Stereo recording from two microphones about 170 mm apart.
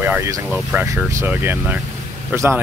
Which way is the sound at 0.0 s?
15° right (ahead or behind).